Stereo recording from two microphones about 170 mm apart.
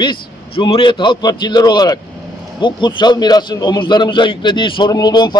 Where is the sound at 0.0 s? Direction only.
30° left (ahead or behind).